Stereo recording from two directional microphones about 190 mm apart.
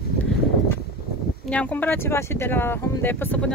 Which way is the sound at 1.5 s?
10° left (ahead or behind).